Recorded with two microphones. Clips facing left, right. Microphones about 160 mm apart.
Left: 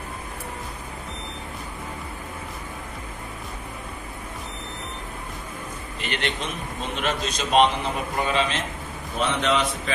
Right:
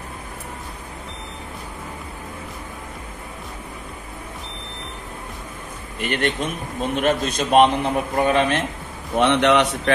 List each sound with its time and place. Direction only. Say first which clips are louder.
5.9 s a man's voice: right 6 dB; 50° right (ahead or behind)
9.1 s a man's voice: right 7 dB; 70° right (ahead or behind)